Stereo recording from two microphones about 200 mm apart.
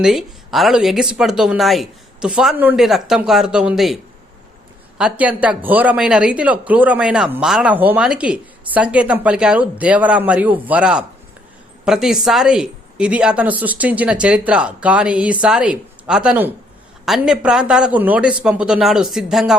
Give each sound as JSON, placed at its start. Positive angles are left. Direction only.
{"t": 0.0, "sound": "a woman's voice", "side_deg": 0}